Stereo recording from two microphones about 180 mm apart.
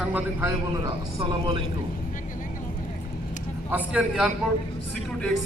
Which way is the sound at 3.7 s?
5° right (ahead or behind).